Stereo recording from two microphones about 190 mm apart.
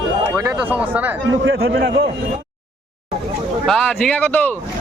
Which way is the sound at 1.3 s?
85° right.